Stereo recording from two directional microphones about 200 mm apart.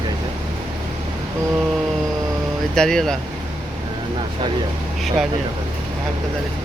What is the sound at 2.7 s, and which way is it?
Speech, 5° left (ahead or behind).